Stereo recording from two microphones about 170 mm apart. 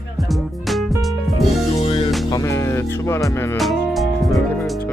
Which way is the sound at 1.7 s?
35° left (ahead or behind).